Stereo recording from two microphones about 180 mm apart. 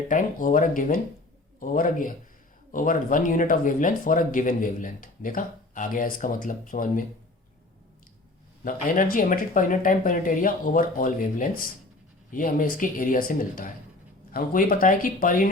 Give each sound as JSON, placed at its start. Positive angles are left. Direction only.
{"t": 0.1, "sound": "speech", "side_deg": 45}
{"t": 8.6, "sound": "speech", "side_deg": 50}